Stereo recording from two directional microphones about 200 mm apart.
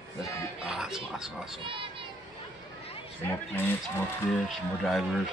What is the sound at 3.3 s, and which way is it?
Speech, 10° left (ahead or behind).